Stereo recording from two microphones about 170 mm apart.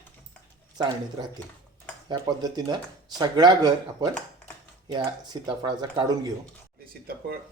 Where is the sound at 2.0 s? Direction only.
25° right (ahead or behind).